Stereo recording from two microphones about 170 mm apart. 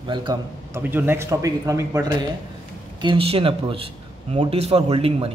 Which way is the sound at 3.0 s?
30° right (ahead or behind).